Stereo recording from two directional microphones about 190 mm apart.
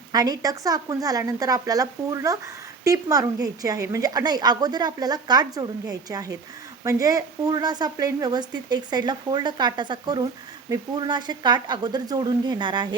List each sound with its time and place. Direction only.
0.1 s a woman's voice: 20° right (ahead or behind)